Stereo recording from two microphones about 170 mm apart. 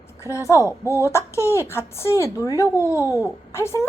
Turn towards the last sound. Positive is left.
turn(degrees=15)  # may be behind; listen again after turning